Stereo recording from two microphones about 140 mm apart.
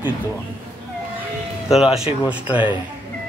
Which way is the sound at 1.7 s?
Centre (ahead or behind).